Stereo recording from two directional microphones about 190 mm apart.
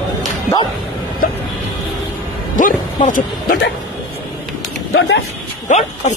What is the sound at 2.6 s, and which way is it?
Speech, 45° left (ahead or behind).